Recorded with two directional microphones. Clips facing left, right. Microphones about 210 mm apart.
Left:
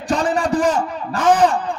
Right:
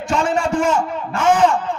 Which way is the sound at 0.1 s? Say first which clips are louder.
Left 1 dB; 35° left (ahead or behind).